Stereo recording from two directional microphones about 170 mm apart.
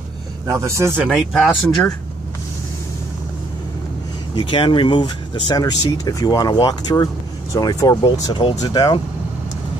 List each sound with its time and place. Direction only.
0.5 s a man's voice: 15° right (ahead or behind)
1.0 s speech: centre (ahead or behind)
4.4 s speech: 30° left (ahead or behind)